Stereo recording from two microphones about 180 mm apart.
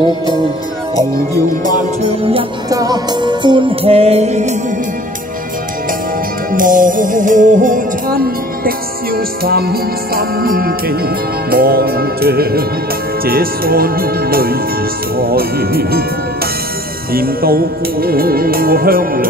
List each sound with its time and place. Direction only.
1.6 s music: 40° right (ahead or behind)
2.7 s music: 20° right (ahead or behind); by 4.6 s 40° right (ahead or behind)
6.5 s music: 50° right (ahead or behind)
17.1 s music: 55° right (ahead or behind)